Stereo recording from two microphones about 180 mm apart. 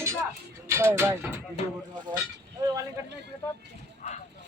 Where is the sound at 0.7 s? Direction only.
15° right (ahead or behind).